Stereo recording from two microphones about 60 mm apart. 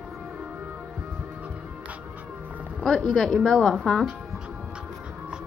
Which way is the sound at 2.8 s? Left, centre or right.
Centre.